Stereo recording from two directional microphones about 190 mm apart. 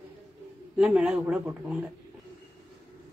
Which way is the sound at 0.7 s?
5° right (ahead or behind).